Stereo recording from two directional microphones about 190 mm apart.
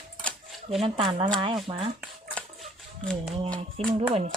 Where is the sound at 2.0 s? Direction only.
Centre (ahead or behind).